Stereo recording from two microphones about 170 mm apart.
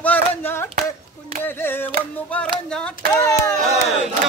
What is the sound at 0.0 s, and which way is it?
Clapping, 10° left (ahead or behind).